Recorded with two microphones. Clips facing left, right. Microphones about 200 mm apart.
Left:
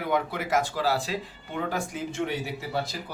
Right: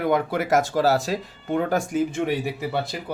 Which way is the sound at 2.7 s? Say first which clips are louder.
Right 4 dB; 60° right (ahead or behind).